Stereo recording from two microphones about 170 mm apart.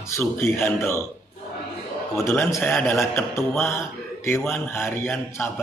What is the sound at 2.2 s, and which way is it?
Speech, 15° left (ahead or behind).